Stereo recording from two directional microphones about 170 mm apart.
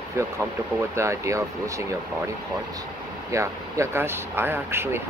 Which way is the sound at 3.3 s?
15° right (ahead or behind).